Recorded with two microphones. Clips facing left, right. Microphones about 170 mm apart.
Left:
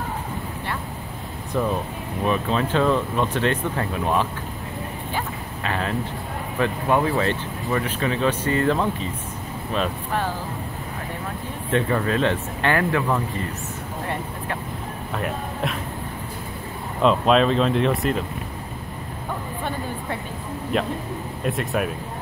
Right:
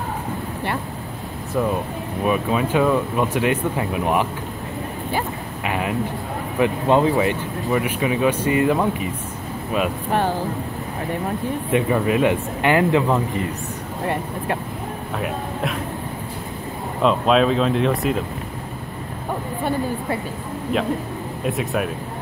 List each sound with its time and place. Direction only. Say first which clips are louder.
2.2 s speech: right 2 dB; 10° right (ahead or behind)
11.7 s speech: right 2 dB; 15° right (ahead or behind)
15.1 s speech: right 1 dB; centre (ahead or behind)
17.0 s speech: right 1 dB; centre (ahead or behind)
21.5 s speech: right 1 dB; centre (ahead or behind)